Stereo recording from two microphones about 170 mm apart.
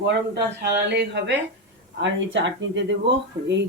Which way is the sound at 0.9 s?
90° right.